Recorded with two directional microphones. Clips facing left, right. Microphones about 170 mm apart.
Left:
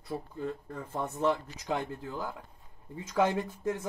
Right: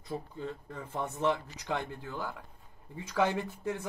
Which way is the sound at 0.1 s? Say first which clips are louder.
Left 2 dB; 5° left (ahead or behind).